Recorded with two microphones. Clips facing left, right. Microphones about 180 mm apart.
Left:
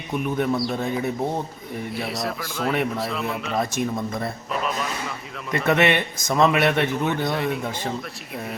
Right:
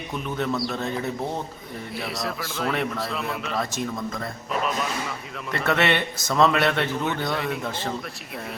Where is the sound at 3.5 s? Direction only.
20° left (ahead or behind).